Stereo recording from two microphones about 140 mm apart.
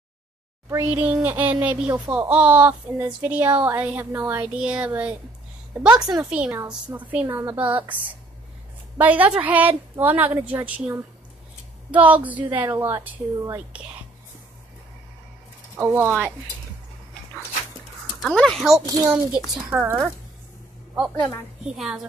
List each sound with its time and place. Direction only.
0.7 s speech: 20° right (ahead or behind)
15.7 s speech: 15° right (ahead or behind)
18.2 s speech: 5° left (ahead or behind)
19.3 s speech: 10° right (ahead or behind)
21.6 s speech: 5° right (ahead or behind)